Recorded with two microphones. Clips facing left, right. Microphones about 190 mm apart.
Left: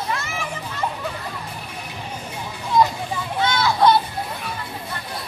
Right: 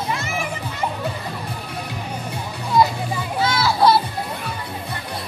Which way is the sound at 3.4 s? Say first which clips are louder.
Even; 5° right (ahead or behind).